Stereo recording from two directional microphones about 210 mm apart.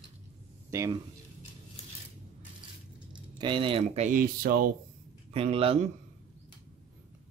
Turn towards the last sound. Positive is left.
turn(degrees=-30)  # may be behind; listen again after turning